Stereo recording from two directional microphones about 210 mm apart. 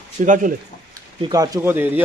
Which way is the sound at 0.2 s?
40° right (ahead or behind).